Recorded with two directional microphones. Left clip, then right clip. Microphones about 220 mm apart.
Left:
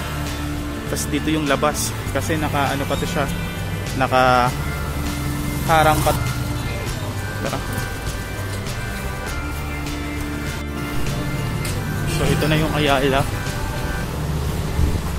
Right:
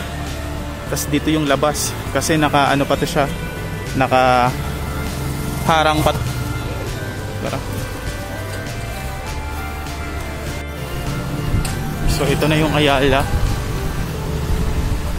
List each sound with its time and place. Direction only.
0.9 s speech: 10° right (ahead or behind)
5.7 s speech: 35° right (ahead or behind)
12.4 s speech: 15° right (ahead or behind)